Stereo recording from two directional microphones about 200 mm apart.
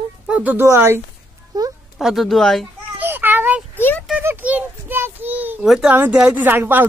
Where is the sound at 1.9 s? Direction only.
Centre (ahead or behind).